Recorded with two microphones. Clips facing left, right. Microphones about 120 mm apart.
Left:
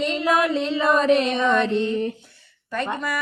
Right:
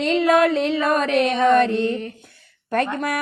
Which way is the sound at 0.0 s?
65° right (ahead or behind).